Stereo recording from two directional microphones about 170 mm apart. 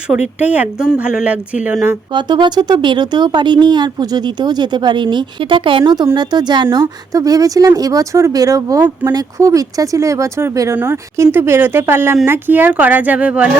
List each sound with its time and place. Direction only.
0.1 s speech: 10° right (ahead or behind)
2.1 s speech: 30° right (ahead or behind); by 13.5 s 5° right (ahead or behind)